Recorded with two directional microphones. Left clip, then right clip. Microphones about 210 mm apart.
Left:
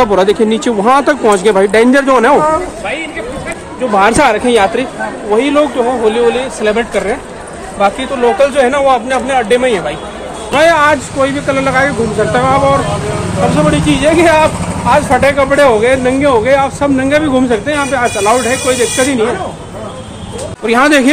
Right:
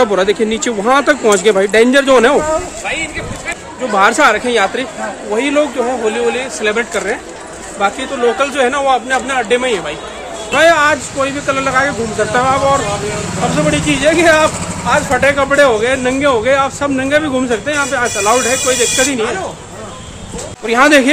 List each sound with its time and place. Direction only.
0.0 s speech: centre (ahead or behind)
3.9 s speech: 5° right (ahead or behind)
20.6 s speech: 5° left (ahead or behind)